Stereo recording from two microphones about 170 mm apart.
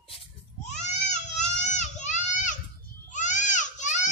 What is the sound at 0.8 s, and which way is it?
Baby cry, 45° left (ahead or behind).